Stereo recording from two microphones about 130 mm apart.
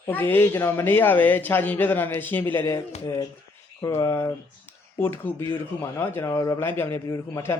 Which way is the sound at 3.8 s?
25° left (ahead or behind).